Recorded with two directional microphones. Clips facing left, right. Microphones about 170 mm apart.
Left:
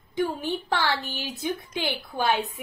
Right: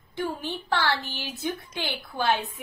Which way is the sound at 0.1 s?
15° left (ahead or behind).